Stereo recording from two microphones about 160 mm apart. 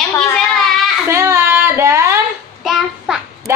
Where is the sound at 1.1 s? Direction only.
15° right (ahead or behind).